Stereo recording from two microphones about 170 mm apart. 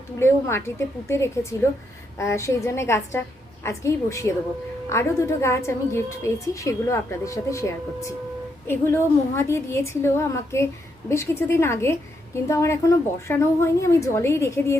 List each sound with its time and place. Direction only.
0.2 s a woman's voice: 15° left (ahead or behind)
8.6 s a woman's voice: 15° left (ahead or behind)